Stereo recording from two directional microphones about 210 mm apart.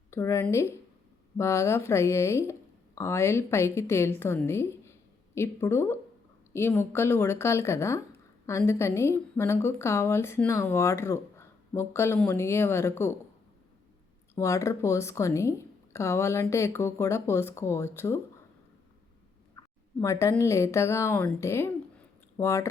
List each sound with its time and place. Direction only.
0.1 s a woman's voice: 15° left (ahead or behind)
14.3 s a woman's voice: 15° left (ahead or behind)
19.5 s a woman's voice: 15° left (ahead or behind)